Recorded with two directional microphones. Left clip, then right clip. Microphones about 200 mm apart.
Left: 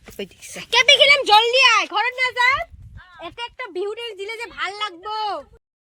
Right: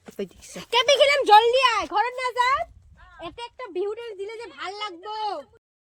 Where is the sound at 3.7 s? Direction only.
20° left (ahead or behind); by 5.5 s 40° left (ahead or behind).